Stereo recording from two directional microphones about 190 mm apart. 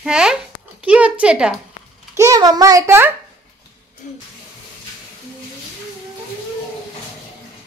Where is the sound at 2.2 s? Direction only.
20° right (ahead or behind).